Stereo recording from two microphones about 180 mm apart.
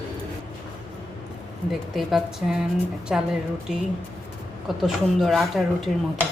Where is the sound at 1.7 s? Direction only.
Centre (ahead or behind).